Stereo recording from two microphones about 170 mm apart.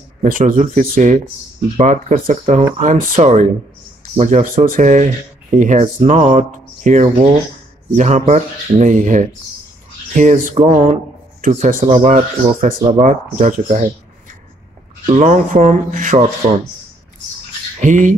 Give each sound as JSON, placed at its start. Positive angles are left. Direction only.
{"t": 0.2, "sound": "speech", "side_deg": -55}
{"t": 15.0, "sound": "speech", "side_deg": -40}
{"t": 17.7, "sound": "speech", "side_deg": -45}